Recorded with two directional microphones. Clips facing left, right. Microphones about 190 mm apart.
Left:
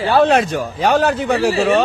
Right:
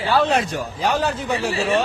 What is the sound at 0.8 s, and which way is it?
Speech, 65° left (ahead or behind).